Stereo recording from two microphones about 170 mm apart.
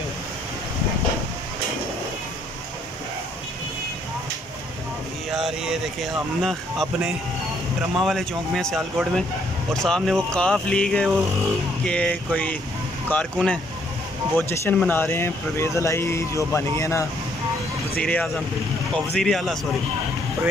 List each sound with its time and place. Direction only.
5.3 s a sound: centre (ahead or behind)
6.4 s speech: centre (ahead or behind); by 17.1 s 20° left (ahead or behind)
17.9 s speech: 10° left (ahead or behind)